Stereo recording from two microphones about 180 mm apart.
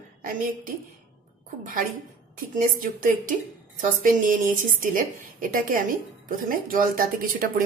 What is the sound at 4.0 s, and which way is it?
A woman's voice, 45° right (ahead or behind).